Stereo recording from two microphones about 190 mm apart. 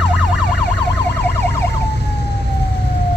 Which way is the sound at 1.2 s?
10° left (ahead or behind).